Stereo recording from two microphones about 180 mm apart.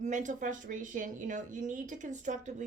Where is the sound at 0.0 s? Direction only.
45° right (ahead or behind).